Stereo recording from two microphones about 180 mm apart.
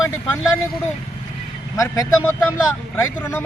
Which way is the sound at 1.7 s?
20° left (ahead or behind).